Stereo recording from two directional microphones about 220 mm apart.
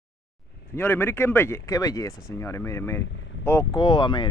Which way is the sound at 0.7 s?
10° left (ahead or behind).